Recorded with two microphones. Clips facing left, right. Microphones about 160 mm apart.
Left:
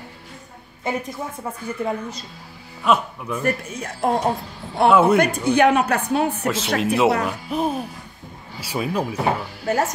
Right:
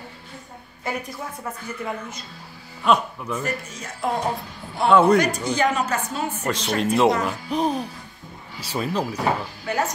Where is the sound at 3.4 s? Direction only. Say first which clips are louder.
Left 9 dB; 55° left (ahead or behind).